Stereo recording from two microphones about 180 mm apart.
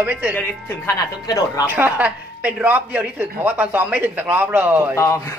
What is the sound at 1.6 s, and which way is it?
Speech, 10° right (ahead or behind).